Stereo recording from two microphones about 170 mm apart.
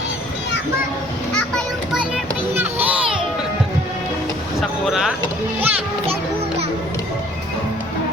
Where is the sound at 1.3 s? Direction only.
Centre (ahead or behind).